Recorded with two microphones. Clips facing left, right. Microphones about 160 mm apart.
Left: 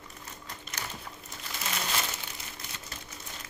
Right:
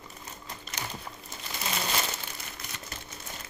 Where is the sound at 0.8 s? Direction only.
20° right (ahead or behind).